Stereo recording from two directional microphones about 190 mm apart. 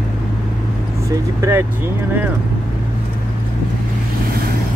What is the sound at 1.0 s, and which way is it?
Speech, 15° right (ahead or behind).